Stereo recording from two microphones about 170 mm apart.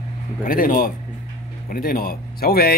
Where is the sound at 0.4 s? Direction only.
55° left (ahead or behind).